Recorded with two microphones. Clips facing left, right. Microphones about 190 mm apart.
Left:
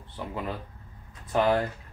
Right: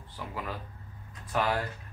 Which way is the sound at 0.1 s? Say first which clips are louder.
Left 4 dB; 25° left (ahead or behind).